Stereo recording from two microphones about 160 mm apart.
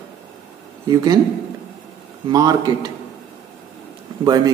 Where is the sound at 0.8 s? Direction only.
25° right (ahead or behind).